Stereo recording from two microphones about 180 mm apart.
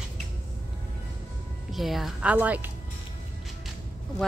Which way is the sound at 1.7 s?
Centre (ahead or behind).